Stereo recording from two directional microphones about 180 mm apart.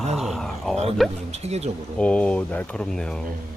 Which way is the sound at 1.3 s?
35° right (ahead or behind).